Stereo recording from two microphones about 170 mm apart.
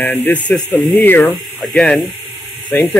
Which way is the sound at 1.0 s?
10° left (ahead or behind).